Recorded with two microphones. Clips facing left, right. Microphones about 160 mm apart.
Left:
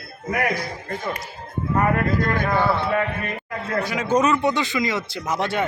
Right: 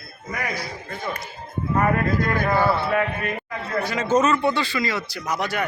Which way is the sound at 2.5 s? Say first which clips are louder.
Right 1 dB; 10° right (ahead or behind).